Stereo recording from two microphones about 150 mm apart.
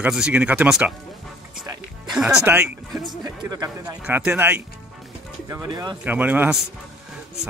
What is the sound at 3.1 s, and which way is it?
Speech, 25° right (ahead or behind).